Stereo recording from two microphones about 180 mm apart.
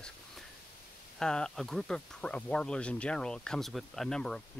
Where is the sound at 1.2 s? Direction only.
5° left (ahead or behind).